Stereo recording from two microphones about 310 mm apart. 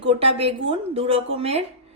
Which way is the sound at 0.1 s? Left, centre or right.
Centre.